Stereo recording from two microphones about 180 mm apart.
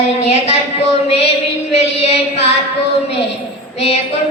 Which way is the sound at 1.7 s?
35° left (ahead or behind).